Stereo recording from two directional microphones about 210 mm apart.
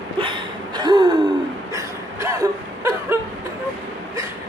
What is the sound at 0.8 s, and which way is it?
Gasp, 20° right (ahead or behind).